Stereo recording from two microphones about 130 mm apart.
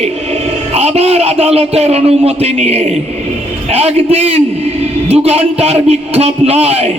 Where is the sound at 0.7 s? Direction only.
55° right (ahead or behind).